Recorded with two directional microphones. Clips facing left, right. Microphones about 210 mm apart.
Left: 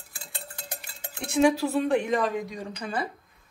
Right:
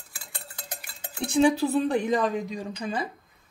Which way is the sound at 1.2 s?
30° right (ahead or behind).